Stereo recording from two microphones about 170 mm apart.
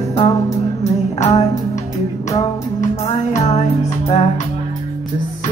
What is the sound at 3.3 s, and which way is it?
Music, 40° left (ahead or behind).